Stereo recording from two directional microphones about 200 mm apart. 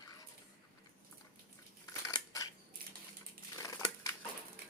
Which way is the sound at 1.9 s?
15° left (ahead or behind).